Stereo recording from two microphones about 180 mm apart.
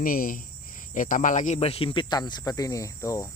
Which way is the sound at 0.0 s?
50° left (ahead or behind).